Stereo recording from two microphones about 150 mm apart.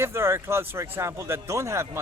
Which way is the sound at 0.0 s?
15° right (ahead or behind).